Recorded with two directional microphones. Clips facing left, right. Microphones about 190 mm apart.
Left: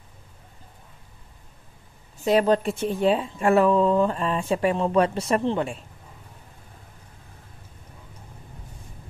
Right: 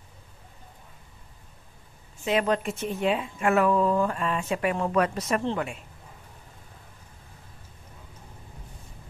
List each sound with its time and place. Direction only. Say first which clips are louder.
2.2 s speech: left 5 dB; 35° left (ahead or behind)
5.4 s speech: left 4 dB; 15° left (ahead or behind)